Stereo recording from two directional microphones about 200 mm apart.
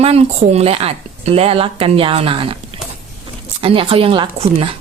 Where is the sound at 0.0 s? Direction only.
30° right (ahead or behind).